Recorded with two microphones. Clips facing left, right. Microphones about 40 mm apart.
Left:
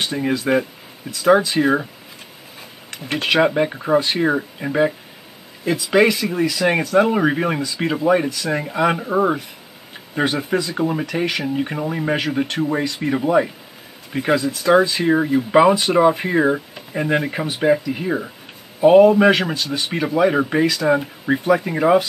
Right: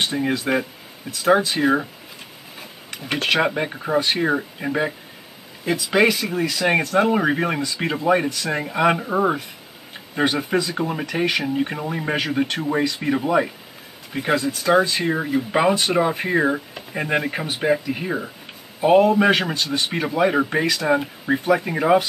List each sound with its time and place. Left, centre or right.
0.0 s speech: centre
3.2 s speech: centre
19.3 s speech: centre